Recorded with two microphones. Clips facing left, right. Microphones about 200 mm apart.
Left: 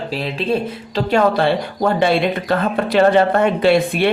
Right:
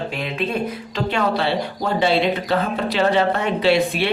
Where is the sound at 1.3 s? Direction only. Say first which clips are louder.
Left 4 dB; 50° left (ahead or behind).